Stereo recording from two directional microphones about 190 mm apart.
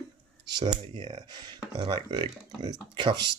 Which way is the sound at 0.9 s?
20° right (ahead or behind).